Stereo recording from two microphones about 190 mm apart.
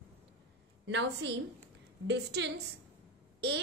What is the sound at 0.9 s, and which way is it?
A woman's voice, 65° right (ahead or behind).